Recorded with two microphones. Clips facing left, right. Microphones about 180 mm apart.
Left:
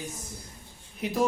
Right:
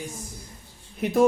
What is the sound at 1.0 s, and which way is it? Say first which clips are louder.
Speech: right 5 dB; 50° right (ahead or behind).